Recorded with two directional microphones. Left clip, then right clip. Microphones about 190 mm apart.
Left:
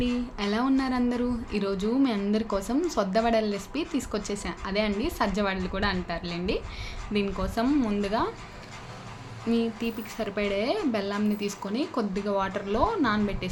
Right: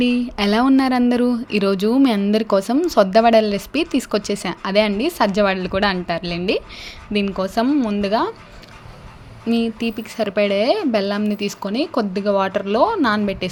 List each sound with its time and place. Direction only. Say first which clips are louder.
0.0 s speech: right 10 dB; 45° right (ahead or behind)
9.5 s speech: right 7 dB; 45° right (ahead or behind)